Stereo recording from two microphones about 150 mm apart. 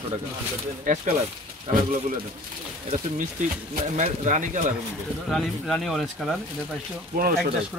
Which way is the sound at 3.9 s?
55° right (ahead or behind).